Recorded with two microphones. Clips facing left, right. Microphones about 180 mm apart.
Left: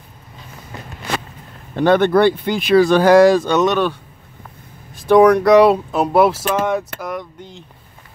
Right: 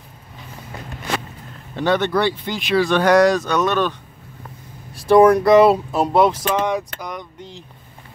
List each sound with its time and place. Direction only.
1.8 s speech: 50° left (ahead or behind); by 3.6 s 30° left (ahead or behind)
3.6 s speech: 15° left (ahead or behind)
5.0 s speech: centre (ahead or behind)